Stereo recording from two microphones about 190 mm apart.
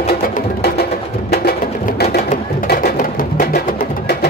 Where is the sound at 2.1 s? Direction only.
50° left (ahead or behind).